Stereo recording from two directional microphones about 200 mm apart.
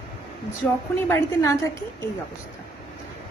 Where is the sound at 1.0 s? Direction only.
15° left (ahead or behind).